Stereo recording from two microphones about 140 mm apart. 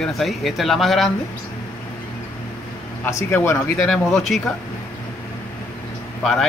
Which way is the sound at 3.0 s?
20° left (ahead or behind).